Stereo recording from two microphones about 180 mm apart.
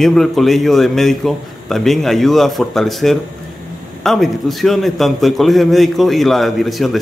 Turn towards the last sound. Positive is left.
turn(degrees=0)  # may be behind; listen again after turning